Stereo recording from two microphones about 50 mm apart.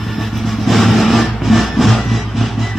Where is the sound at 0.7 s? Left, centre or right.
Centre.